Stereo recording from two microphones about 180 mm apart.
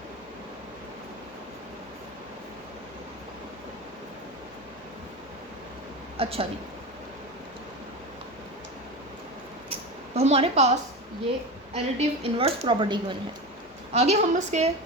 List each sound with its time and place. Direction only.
6.1 s a woman's voice: 30° right (ahead or behind)
10.2 s a woman's voice: 35° right (ahead or behind)